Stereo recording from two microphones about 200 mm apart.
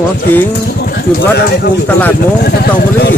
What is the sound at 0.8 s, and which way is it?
Speech, 50° left (ahead or behind).